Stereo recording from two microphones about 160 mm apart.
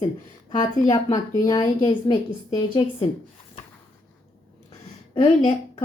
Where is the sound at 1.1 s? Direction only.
25° left (ahead or behind).